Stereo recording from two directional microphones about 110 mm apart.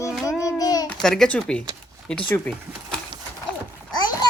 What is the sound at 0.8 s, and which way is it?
Speech, 5° left (ahead or behind).